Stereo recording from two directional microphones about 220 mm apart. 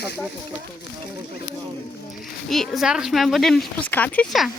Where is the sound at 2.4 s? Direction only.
Centre (ahead or behind).